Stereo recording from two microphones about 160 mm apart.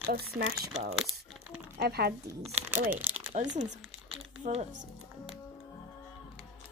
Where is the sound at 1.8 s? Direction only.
85° right.